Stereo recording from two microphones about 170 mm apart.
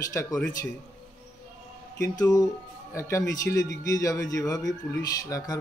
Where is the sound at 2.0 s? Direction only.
20° left (ahead or behind).